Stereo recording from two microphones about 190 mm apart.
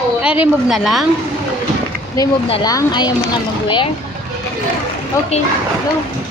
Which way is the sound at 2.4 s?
30° left (ahead or behind).